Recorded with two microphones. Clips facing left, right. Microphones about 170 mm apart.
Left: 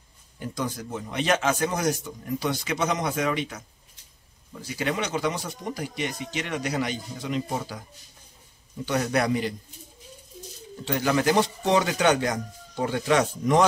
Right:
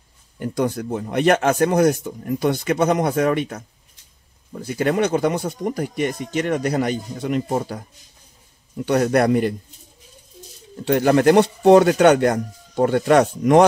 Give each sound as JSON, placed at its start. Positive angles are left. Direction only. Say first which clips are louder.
{"t": 0.4, "sound": "speech", "louder": "right 9 dB", "side_deg": -60}
{"t": 10.9, "sound": "speech", "louder": "right 8 dB", "side_deg": -55}